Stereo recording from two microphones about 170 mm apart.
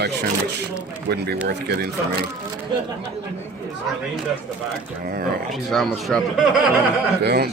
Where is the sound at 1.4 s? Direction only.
70° right (ahead or behind).